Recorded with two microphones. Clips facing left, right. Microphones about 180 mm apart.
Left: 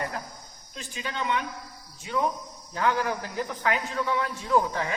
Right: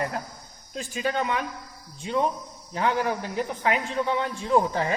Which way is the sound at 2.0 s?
25° right (ahead or behind).